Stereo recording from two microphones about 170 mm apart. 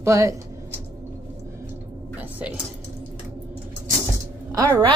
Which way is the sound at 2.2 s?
10° right (ahead or behind).